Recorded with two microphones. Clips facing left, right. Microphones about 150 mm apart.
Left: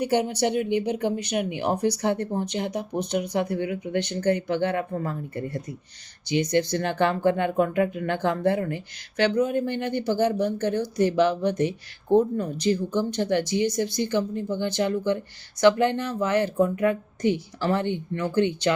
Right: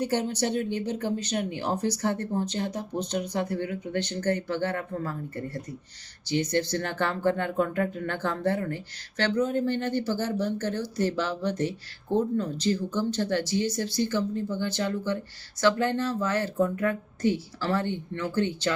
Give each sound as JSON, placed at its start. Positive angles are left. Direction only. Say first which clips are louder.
{"t": 0.0, "sound": "speech", "louder": "left 4 dB", "side_deg": 10}